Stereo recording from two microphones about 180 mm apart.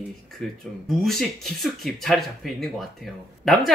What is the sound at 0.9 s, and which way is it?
Speech, centre (ahead or behind).